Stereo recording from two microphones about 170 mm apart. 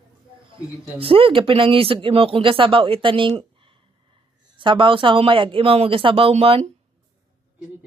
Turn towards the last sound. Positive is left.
turn(degrees=-35)  # may be behind; listen again after turning